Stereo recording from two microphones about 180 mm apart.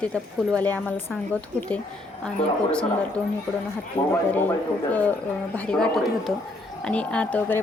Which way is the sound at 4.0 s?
30° left (ahead or behind).